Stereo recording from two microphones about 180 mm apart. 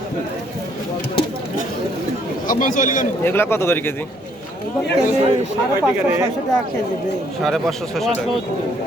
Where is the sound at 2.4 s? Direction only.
50° left (ahead or behind).